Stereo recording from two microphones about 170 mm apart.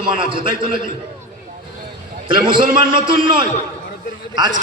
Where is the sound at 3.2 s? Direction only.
30° right (ahead or behind).